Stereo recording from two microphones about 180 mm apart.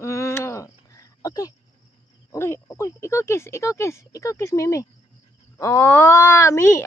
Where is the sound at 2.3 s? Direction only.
15° left (ahead or behind).